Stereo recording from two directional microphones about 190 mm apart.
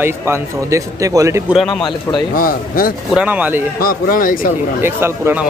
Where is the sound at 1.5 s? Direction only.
Centre (ahead or behind).